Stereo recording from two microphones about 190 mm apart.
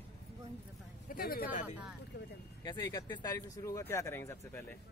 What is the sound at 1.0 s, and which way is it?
Speech, 50° left (ahead or behind).